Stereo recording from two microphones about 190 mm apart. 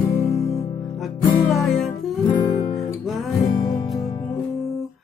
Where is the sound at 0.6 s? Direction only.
20° left (ahead or behind).